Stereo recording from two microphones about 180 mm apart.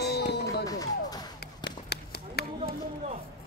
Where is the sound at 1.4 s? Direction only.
65° left (ahead or behind).